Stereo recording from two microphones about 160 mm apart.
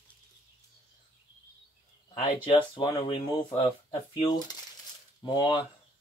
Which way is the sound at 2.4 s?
30° left (ahead or behind).